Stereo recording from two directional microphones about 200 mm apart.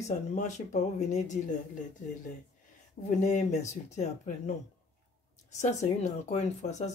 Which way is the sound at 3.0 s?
35° left (ahead or behind).